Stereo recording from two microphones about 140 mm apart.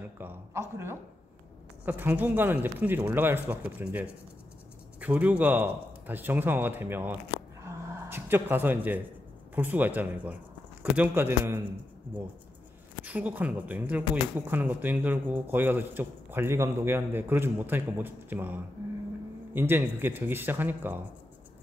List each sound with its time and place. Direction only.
0.0 s a man's voice: 15° right (ahead or behind)
7.6 s a sound: 20° right (ahead or behind)
9.6 s speech: 15° right (ahead or behind)
13.0 s speech: 10° right (ahead or behind)